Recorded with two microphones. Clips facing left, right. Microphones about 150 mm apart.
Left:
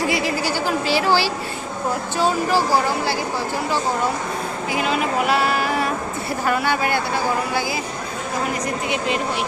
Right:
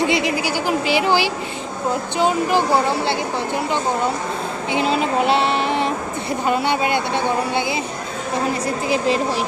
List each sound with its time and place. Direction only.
0.0 s a sound: 20° right (ahead or behind)
2.1 s speech: 20° right (ahead or behind)
4.7 s speech: 30° right (ahead or behind)
8.6 s speech: 35° right (ahead or behind)